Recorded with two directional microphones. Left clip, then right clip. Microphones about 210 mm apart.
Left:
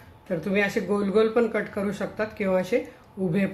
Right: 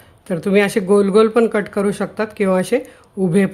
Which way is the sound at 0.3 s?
55° right (ahead or behind).